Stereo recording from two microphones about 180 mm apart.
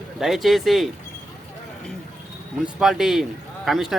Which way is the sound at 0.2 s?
Centre (ahead or behind).